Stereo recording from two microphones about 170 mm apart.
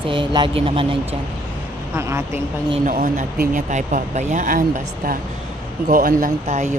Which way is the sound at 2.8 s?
50° right (ahead or behind).